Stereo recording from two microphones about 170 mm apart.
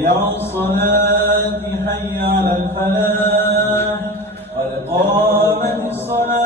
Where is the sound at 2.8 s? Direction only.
15° left (ahead or behind).